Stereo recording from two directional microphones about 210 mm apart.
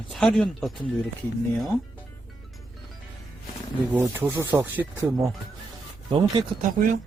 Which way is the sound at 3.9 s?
10° right (ahead or behind).